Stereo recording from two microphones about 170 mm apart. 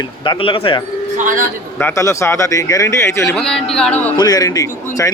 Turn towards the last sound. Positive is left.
turn(degrees=20)  # may be behind; listen again after turning